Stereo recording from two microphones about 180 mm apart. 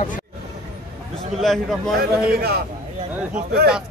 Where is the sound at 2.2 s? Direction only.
60° right (ahead or behind).